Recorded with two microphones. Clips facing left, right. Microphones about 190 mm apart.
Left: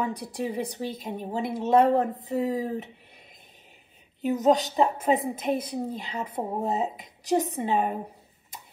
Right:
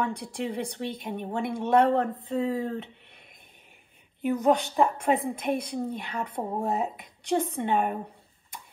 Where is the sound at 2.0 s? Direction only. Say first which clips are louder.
Left 1 dB; 20° left (ahead or behind).